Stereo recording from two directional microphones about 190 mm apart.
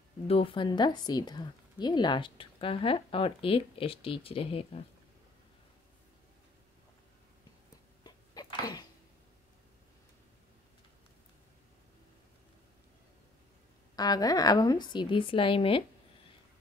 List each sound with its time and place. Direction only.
0.3 s speech: 30° left (ahead or behind)
8.0 s a sound: 20° left (ahead or behind)
13.9 s speech: 20° left (ahead or behind)